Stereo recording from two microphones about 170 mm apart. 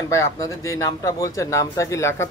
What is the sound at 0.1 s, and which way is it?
A man's voice, 20° left (ahead or behind).